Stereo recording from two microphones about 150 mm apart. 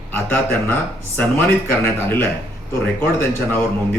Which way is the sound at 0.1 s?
15° left (ahead or behind).